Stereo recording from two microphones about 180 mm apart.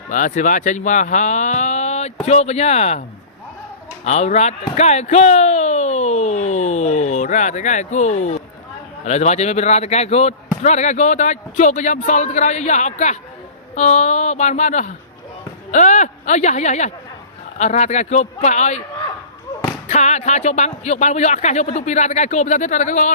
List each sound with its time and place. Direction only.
0.1 s speech: 45° left (ahead or behind)
4.0 s speech: 40° left (ahead or behind)
4.7 s a sound: 40° left (ahead or behind)
9.0 s speech: 40° left (ahead or behind)
19.9 s speech: 40° left (ahead or behind)